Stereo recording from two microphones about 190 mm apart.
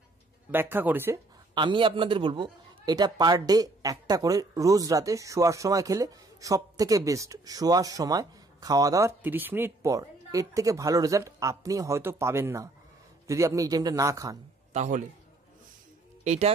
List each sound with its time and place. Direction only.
0.5 s a man's voice: 10° right (ahead or behind)
1.5 s a man's voice: 25° right (ahead or behind)
14.7 s a man's voice: 40° right (ahead or behind)
16.3 s speech: 35° right (ahead or behind)